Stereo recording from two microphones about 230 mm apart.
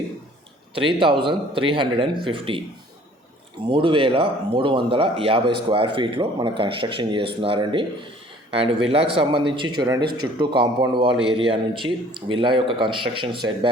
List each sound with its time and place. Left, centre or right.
0.7 s speech: right
3.7 s speech: right